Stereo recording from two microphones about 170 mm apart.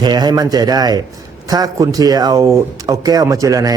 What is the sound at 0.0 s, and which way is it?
Speech, 25° right (ahead or behind).